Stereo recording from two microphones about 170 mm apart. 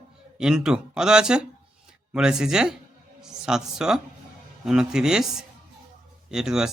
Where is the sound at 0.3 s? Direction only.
5° right (ahead or behind).